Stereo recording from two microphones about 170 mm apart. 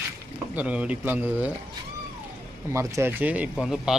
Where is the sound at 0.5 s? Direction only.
10° right (ahead or behind).